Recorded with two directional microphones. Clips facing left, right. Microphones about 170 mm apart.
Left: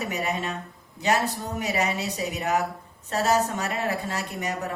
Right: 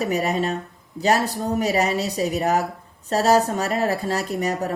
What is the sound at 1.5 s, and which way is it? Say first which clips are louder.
A woman's voice: right 6 dB; 40° right (ahead or behind).